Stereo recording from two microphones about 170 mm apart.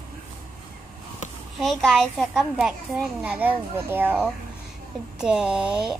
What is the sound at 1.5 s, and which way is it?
Speech, centre (ahead or behind).